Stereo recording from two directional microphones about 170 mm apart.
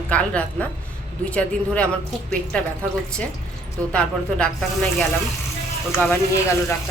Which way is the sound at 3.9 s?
5° left (ahead or behind).